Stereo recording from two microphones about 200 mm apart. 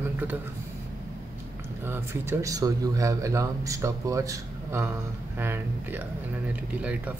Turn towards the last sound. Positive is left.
turn(degrees=-5)  # may be behind; listen again after turning